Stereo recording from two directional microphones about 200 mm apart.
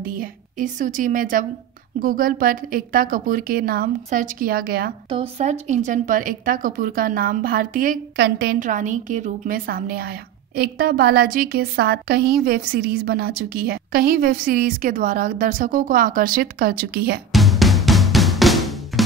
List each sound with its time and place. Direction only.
0.0 s a woman's voice: 45° right (ahead or behind)
5.1 s speech: 30° right (ahead or behind); by 17.2 s 50° right (ahead or behind)
17.3 s drum: centre (ahead or behind)